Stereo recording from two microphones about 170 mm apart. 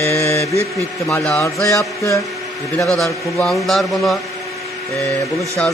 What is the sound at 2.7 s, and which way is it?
A man's voice, centre (ahead or behind).